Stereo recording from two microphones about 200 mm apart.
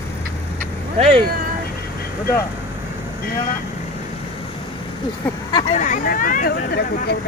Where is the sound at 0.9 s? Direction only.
30° right (ahead or behind).